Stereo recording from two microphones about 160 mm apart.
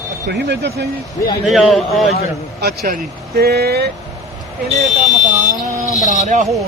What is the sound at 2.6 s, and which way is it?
Speech, 75° right (ahead or behind).